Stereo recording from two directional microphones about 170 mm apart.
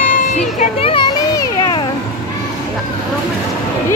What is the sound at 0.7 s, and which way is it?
Children playing, 30° left (ahead or behind).